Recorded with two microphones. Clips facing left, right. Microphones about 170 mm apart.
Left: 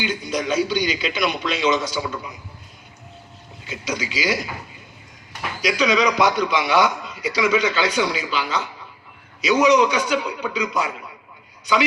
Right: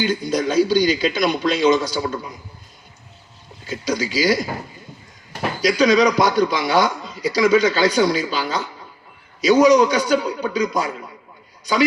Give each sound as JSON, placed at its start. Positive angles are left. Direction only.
{"t": 0.0, "sound": "a man's voice", "side_deg": -40}
{"t": 4.1, "sound": "a man's voice", "side_deg": -40}